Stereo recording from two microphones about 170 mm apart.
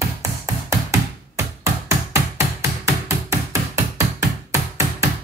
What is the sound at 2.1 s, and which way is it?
Music, 20° right (ahead or behind).